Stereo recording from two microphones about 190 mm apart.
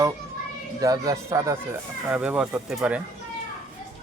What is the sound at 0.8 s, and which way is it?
Speech, 20° right (ahead or behind).